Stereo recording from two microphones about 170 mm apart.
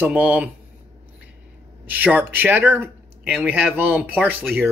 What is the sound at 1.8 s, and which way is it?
Speech, 10° right (ahead or behind).